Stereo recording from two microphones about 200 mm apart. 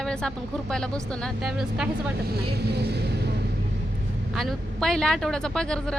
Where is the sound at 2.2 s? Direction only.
50° right (ahead or behind).